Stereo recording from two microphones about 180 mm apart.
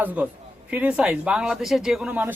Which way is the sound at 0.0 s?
10° right (ahead or behind).